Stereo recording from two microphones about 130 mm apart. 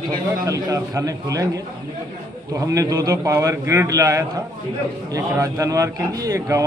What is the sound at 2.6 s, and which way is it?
A man's voice, 25° right (ahead or behind).